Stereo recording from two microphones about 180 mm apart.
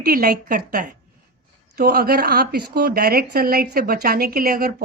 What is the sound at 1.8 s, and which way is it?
A woman's voice, 60° right (ahead or behind).